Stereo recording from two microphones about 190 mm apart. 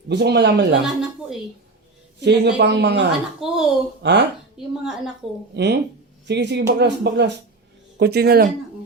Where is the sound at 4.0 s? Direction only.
65° right (ahead or behind).